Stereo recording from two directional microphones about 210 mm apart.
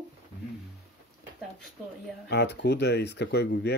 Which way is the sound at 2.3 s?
55° left (ahead or behind).